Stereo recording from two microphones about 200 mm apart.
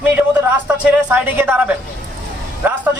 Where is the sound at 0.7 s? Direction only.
5° right (ahead or behind).